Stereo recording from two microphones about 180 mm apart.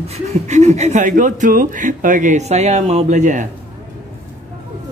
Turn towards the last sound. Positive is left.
turn(degrees=-45)  # may be behind; listen again after turning